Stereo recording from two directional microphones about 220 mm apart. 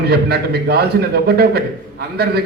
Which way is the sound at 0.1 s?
45° right (ahead or behind).